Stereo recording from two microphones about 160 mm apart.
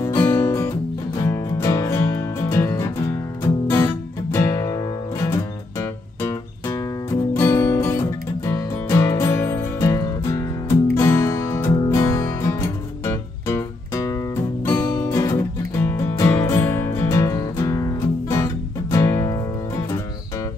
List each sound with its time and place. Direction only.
0.0 s music: 15° left (ahead or behind)